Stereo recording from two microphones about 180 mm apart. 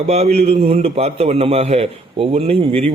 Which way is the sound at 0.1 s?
35° right (ahead or behind).